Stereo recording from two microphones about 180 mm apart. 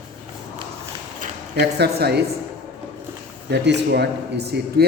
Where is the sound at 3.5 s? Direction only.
70° right (ahead or behind).